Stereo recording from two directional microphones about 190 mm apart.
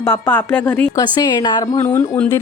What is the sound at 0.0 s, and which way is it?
Speech, 10° left (ahead or behind).